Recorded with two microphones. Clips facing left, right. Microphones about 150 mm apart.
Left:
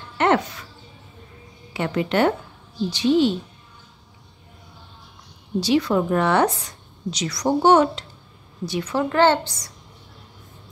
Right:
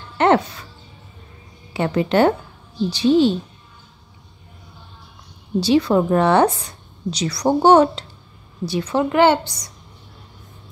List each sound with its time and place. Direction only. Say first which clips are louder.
0.2 s speech: right 3 dB; 30° right (ahead or behind)
1.7 s a woman's voice: right 4 dB; 30° right (ahead or behind)
5.6 s a woman's voice: right 3 dB; 30° right (ahead or behind)
9.1 s a woman's voice: right 2 dB; 15° right (ahead or behind)